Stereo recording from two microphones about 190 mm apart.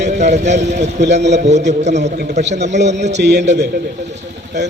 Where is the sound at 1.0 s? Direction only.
65° right (ahead or behind).